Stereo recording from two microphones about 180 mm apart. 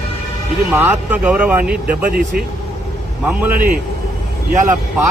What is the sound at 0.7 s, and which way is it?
Speech, 10° right (ahead or behind).